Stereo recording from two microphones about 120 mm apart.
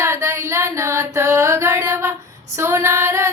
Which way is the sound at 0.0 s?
25° right (ahead or behind).